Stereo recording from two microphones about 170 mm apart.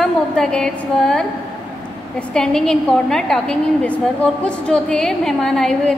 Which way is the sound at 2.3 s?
5° left (ahead or behind).